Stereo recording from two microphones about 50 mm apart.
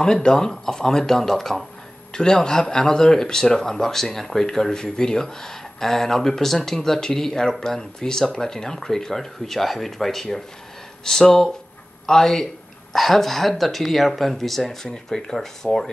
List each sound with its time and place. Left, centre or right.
0.0 s speech: centre